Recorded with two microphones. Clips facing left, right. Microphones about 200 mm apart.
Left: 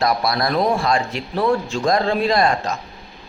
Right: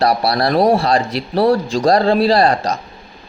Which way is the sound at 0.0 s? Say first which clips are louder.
Right 4 dB; 35° right (ahead or behind).